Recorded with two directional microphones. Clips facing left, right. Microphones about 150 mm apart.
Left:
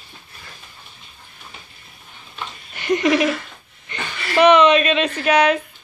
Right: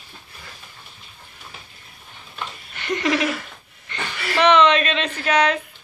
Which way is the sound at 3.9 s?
10° left (ahead or behind).